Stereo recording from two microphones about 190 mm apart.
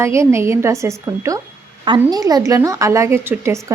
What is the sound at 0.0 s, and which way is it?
A woman's voice, 15° right (ahead or behind).